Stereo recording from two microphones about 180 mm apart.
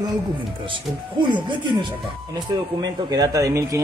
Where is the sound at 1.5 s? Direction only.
25° right (ahead or behind).